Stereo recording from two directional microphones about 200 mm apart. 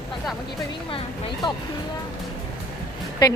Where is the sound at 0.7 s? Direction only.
25° left (ahead or behind).